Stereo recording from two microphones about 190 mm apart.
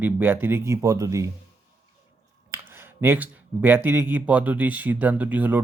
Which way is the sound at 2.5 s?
15° right (ahead or behind).